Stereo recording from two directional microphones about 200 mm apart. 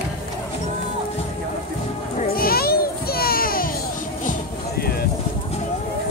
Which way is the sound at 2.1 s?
45° left (ahead or behind).